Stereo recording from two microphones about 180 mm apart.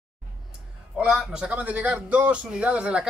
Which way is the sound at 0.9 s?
5° right (ahead or behind).